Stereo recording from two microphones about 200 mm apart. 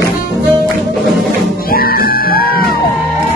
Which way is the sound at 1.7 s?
50° left (ahead or behind).